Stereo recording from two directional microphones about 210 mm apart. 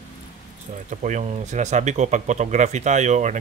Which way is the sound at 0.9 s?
35° right (ahead or behind).